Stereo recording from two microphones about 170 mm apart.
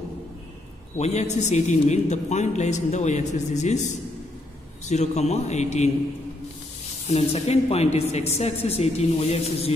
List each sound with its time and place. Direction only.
0.9 s a man's voice: 40° left (ahead or behind)
4.8 s speech: 40° left (ahead or behind)
7.1 s speech: 40° left (ahead or behind)